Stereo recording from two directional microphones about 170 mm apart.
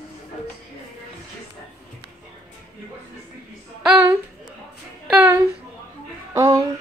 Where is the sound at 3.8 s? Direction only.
5° right (ahead or behind).